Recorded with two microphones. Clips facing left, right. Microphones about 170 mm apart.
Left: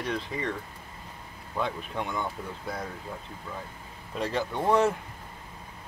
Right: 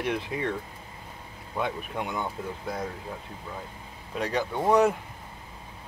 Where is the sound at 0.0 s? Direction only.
5° right (ahead or behind).